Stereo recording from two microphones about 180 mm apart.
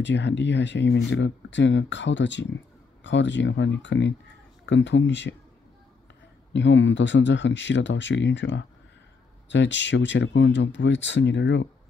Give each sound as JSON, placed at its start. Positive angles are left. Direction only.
{"t": 0.0, "sound": "speech", "side_deg": 80}
{"t": 6.5, "sound": "speech", "side_deg": 90}